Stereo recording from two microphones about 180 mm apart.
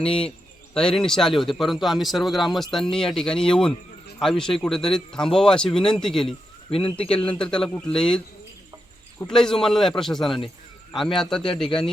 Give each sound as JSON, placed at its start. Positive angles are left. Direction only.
{"t": 0.0, "sound": "a man's voice", "side_deg": 5}
{"t": 6.7, "sound": "speech", "side_deg": 30}
{"t": 7.3, "sound": "a man's voice", "side_deg": 5}
{"t": 9.3, "sound": "a man's voice", "side_deg": 5}